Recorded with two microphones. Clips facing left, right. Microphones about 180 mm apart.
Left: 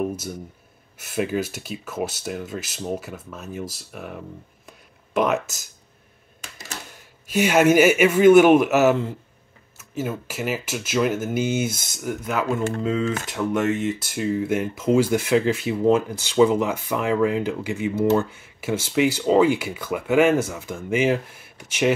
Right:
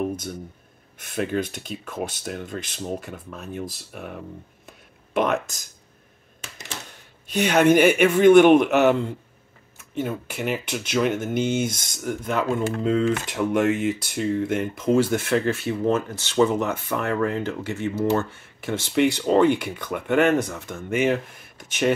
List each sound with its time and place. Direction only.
0.9 s speech: 5° left (ahead or behind)
4.6 s a sound: centre (ahead or behind)
7.2 s speech: 5° left (ahead or behind)